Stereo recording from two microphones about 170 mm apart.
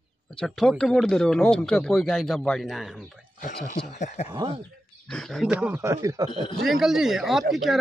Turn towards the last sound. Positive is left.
turn(degrees=0)  # may be behind; listen again after turning